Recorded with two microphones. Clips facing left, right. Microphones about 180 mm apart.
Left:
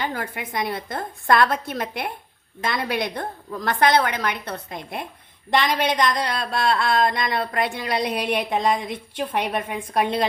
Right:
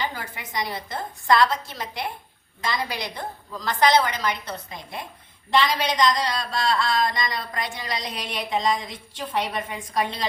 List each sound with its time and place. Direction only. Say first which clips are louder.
0.0 s speech: left 3 dB; 55° left (ahead or behind)